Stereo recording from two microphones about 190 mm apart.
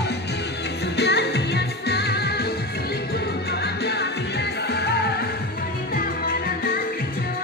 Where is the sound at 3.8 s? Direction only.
60° left (ahead or behind).